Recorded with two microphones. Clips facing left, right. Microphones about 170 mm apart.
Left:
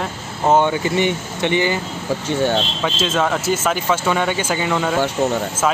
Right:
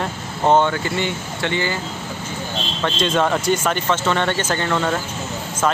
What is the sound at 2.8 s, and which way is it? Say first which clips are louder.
Speech: right 4 dB; 5° left (ahead or behind).